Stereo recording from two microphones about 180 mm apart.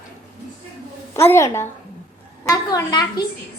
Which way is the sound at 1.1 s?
15° left (ahead or behind).